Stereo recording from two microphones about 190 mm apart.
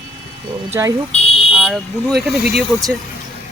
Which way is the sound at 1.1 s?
30° left (ahead or behind).